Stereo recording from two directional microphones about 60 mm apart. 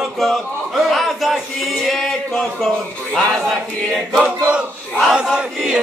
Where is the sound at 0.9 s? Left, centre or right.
Centre.